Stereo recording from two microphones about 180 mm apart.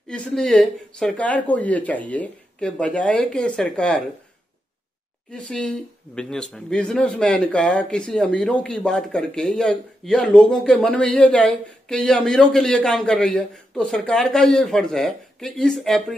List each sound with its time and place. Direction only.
0.1 s speech: 5° left (ahead or behind)
5.3 s speech: 5° left (ahead or behind)